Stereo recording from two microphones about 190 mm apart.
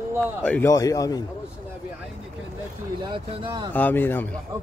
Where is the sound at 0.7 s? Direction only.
20° left (ahead or behind).